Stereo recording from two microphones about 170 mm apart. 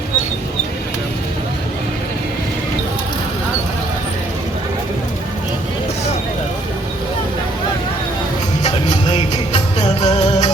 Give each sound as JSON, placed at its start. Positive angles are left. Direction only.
{"t": 8.6, "sound": "music", "side_deg": 35}